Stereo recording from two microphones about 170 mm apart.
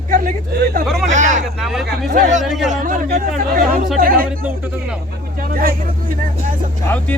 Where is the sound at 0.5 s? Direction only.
65° right (ahead or behind).